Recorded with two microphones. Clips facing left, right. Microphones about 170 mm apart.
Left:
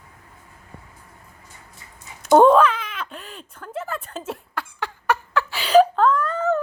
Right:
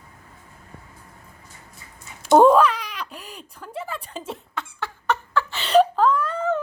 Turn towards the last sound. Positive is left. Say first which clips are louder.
# left 1 dB
turn(degrees=0)  # may be behind; listen again after turning